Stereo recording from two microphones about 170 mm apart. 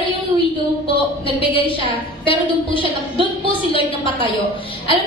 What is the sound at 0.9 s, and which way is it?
A woman's voice, 30° left (ahead or behind).